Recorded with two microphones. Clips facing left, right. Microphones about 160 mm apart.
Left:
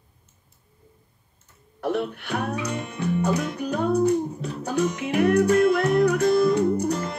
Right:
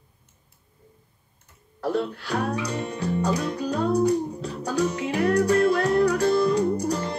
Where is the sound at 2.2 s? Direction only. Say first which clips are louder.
Right 1 dB; 35° right (ahead or behind).